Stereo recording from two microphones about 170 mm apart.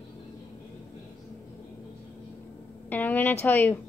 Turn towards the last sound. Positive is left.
turn(degrees=10)  # may be behind; listen again after turning